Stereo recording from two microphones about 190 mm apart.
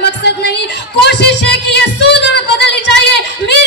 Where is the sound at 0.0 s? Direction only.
60° left (ahead or behind).